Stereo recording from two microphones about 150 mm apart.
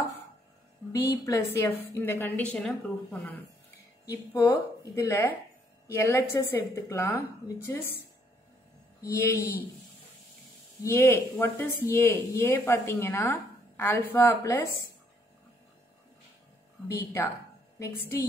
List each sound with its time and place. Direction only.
0.9 s a woman's voice: 20° left (ahead or behind)
4.0 s a woman's voice: 25° left (ahead or behind)
9.0 s a woman's voice: 20° left (ahead or behind)
10.8 s speech: 20° left (ahead or behind)
17.0 s a woman's voice: 15° left (ahead or behind)